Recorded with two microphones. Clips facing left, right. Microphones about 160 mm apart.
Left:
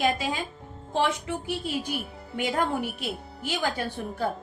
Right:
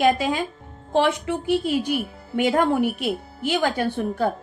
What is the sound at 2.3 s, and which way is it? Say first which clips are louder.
A woman's voice: right 7 dB; 65° right (ahead or behind).